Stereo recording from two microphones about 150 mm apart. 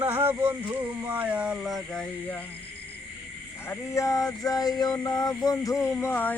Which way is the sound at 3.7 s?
20° left (ahead or behind).